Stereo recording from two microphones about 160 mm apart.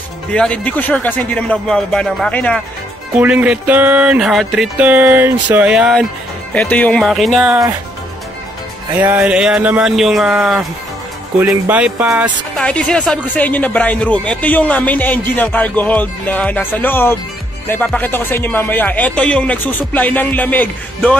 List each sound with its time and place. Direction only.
0.3 s speech: 5° left (ahead or behind)
3.2 s speech: 10° right (ahead or behind)
6.5 s speech: 10° left (ahead or behind)
9.0 s speech: 10° right (ahead or behind)
12.5 s speech: 5° left (ahead or behind)